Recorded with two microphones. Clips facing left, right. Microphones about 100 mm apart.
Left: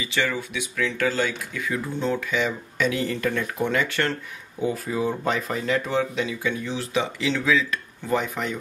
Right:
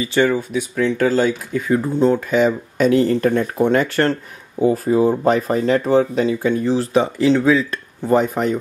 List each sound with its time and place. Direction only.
0.0 s speech: 40° right (ahead or behind)